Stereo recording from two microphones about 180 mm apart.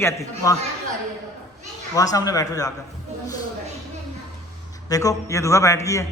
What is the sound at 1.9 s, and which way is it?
Speech, 20° left (ahead or behind).